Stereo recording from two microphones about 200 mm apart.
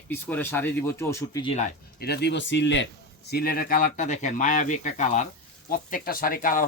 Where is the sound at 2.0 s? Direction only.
55° left (ahead or behind).